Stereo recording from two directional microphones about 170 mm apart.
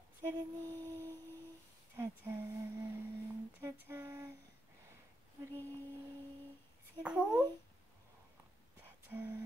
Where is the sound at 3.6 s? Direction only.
15° right (ahead or behind).